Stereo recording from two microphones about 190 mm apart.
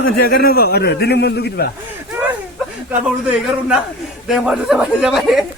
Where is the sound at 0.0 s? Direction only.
50° left (ahead or behind).